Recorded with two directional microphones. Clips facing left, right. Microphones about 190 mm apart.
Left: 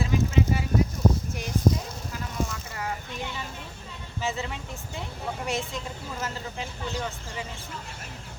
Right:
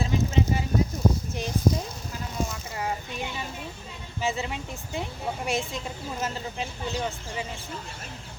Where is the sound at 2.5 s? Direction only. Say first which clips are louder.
Right 2 dB; 20° right (ahead or behind).